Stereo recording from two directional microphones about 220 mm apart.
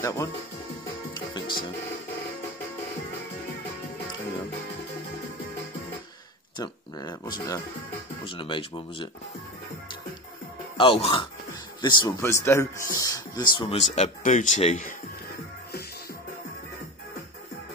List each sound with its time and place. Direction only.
0.0 s speech: 15° left (ahead or behind)
1.1 s music: 20° left (ahead or behind)
6.6 s a sound: 20° left (ahead or behind)
8.2 s speech: 20° left (ahead or behind)
10.8 s a man's voice: 25° left (ahead or behind)